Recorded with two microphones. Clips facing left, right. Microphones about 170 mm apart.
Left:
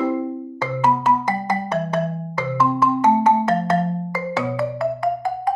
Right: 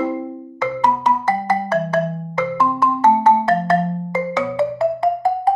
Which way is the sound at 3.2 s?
20° left (ahead or behind).